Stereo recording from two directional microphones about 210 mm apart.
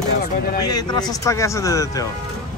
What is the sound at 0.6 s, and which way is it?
A man's voice, 20° left (ahead or behind).